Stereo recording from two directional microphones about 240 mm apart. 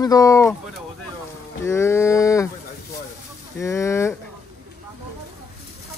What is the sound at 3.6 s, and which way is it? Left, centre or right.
Speech, centre.